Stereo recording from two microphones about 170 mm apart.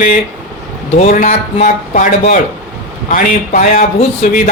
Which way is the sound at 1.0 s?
45° left (ahead or behind).